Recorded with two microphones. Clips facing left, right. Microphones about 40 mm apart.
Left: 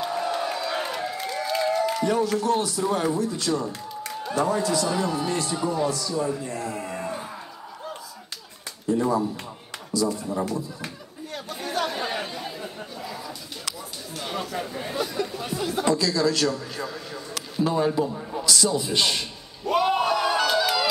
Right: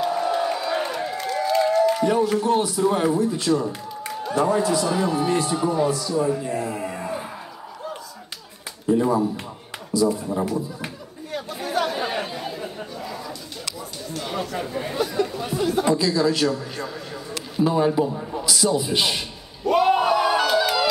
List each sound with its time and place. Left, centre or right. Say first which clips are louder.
0.0 s crowd: right 4 dB; centre
1.4 s applause: right 5 dB; centre
2.0 s speech: right 3 dB; centre
4.1 s a sound: right 4 dB; centre
4.4 s a man's voice: right 3 dB; centre
8.8 s a man's voice: right 3 dB; centre
11.3 s chatter: right 4 dB; centre
14.1 s speech: right 2 dB; centre
15.9 s a sound: left 1 dB; centre